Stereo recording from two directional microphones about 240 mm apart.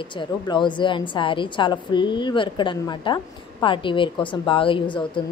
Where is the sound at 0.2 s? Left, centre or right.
Centre.